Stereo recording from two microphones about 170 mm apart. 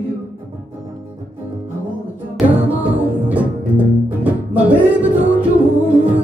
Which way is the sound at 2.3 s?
10° right (ahead or behind).